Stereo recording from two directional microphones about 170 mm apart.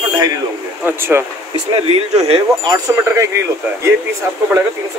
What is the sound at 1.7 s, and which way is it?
Speech, 35° right (ahead or behind).